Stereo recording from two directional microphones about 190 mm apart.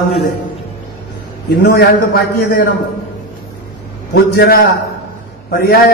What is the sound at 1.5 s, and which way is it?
A man's voice, 55° left (ahead or behind).